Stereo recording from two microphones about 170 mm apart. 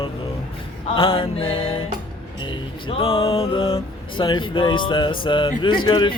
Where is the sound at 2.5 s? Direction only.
30° left (ahead or behind).